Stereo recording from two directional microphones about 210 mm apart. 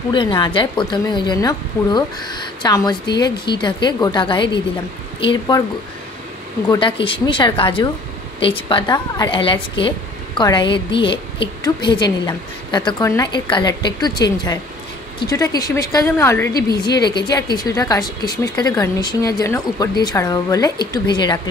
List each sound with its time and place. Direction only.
0.1 s a woman's voice: 20° left (ahead or behind)
6.7 s a woman's voice: 25° left (ahead or behind)